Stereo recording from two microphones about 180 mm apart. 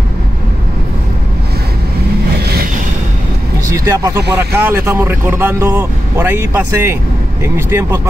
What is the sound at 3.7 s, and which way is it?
Speech, 15° right (ahead or behind).